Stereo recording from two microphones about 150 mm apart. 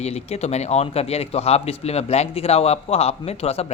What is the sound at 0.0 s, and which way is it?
A man's voice, 45° left (ahead or behind).